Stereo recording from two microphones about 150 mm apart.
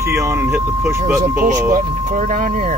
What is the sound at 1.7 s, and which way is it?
Speech, 65° right (ahead or behind).